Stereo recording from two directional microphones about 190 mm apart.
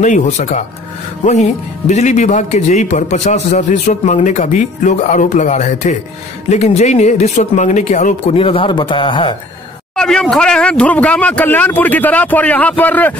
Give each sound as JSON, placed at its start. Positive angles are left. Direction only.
{"t": 0.0, "sound": "a man's voice", "side_deg": 40}
{"t": 9.9, "sound": "speech", "side_deg": 5}